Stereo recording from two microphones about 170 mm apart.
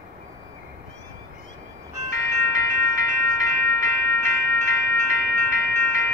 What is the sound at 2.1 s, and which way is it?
Music, 20° left (ahead or behind).